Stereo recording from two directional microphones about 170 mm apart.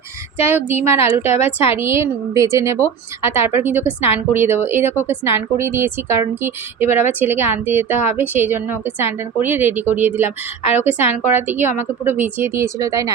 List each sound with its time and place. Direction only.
0.3 s a woman's voice: 10° right (ahead or behind)
1.2 s speech: 40° left (ahead or behind)
1.7 s a woman's voice: 15° right (ahead or behind)
10.2 s speech: 40° left (ahead or behind)
11.3 s a woman's voice: 10° right (ahead or behind)